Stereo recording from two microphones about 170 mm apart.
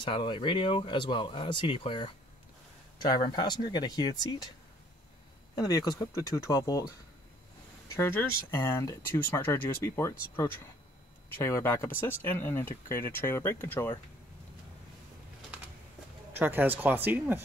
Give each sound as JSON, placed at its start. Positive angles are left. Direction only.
{"t": 0.0, "sound": "speech", "side_deg": 30}
{"t": 5.6, "sound": "speech", "side_deg": 20}
{"t": 7.9, "sound": "speech", "side_deg": 15}
{"t": 11.3, "sound": "speech", "side_deg": 15}
{"t": 16.3, "sound": "speech", "side_deg": -10}